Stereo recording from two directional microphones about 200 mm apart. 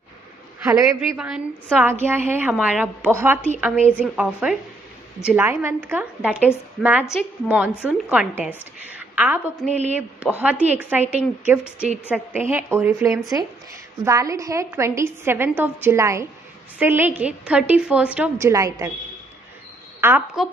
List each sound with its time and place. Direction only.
0.7 s a woman's voice: 5° right (ahead or behind)
9.7 s a woman's voice: 35° right (ahead or behind)
9.9 s a woman's voice: 5° right (ahead or behind)
20.0 s a woman's voice: 10° right (ahead or behind)